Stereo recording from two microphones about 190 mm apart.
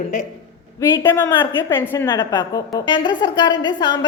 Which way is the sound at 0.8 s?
15° left (ahead or behind).